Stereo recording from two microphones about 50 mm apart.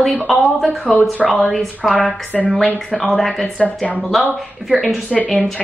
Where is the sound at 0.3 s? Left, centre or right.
Centre.